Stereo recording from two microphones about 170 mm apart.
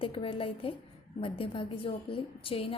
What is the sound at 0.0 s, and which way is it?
A woman's voice, 30° left (ahead or behind).